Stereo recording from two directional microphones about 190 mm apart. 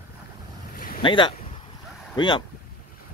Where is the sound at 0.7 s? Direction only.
50° left (ahead or behind).